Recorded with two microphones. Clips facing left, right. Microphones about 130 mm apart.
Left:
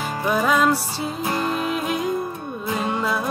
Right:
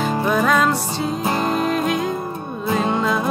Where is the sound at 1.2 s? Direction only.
35° right (ahead or behind).